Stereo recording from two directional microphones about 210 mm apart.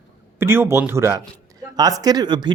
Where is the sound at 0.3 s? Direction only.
10° right (ahead or behind).